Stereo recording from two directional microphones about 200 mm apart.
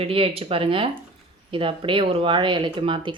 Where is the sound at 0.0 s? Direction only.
30° right (ahead or behind).